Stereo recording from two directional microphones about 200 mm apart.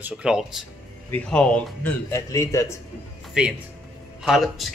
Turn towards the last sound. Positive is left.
turn(degrees=0)  # may be behind; listen again after turning